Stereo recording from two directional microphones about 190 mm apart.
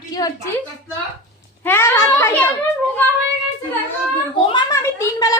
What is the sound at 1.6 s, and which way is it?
Speech, 10° left (ahead or behind).